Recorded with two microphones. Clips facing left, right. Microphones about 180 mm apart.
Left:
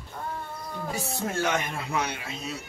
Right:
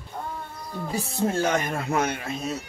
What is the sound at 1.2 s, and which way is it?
Speech, 30° right (ahead or behind).